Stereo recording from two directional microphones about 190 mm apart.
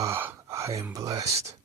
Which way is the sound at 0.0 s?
10° right (ahead or behind).